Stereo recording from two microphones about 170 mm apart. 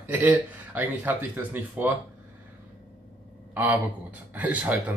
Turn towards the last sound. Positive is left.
turn(degrees=-10)  # may be behind; listen again after turning